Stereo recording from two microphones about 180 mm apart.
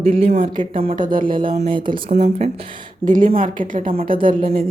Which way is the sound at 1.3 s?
30° right (ahead or behind).